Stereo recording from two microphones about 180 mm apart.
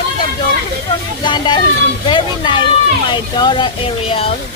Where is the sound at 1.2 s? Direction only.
25° left (ahead or behind).